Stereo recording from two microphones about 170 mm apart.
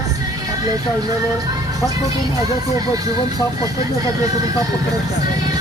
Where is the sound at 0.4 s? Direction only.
20° right (ahead or behind).